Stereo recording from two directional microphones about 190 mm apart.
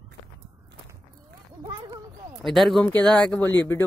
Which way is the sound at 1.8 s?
20° right (ahead or behind).